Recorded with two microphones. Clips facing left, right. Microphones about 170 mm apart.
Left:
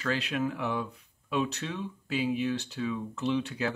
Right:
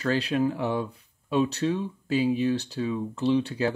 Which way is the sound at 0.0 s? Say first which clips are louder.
Right 6 dB; 35° right (ahead or behind).